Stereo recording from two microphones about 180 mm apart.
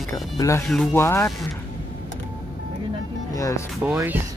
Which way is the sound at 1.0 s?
15° left (ahead or behind).